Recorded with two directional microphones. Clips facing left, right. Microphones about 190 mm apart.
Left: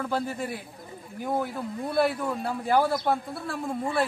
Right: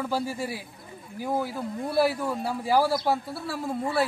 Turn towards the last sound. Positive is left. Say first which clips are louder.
# right 1 dB
turn(degrees=-5)  # may be behind; listen again after turning